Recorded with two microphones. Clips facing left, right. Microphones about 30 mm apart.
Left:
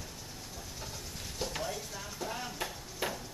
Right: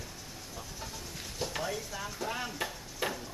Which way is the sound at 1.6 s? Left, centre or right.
Centre.